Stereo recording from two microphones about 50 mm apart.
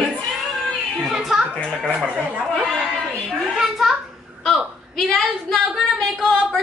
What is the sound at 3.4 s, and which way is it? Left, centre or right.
Speech, centre.